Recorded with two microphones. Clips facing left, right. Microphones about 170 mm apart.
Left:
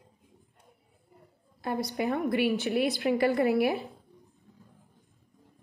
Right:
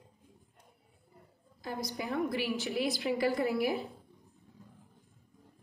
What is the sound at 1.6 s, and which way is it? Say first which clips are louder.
A woman's voice: left 7 dB; 65° left (ahead or behind).